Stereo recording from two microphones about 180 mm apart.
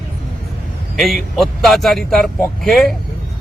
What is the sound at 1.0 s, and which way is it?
Speech, centre (ahead or behind).